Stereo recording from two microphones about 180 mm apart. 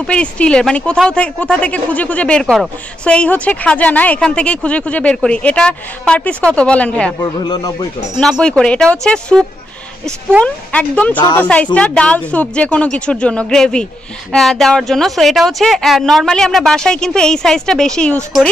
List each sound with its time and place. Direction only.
0.0 s speech: 5° left (ahead or behind)
7.2 s speech: 20° left (ahead or behind)
8.2 s speech: 5° left (ahead or behind)